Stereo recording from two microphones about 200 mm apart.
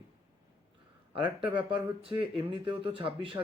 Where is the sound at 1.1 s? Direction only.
25° right (ahead or behind).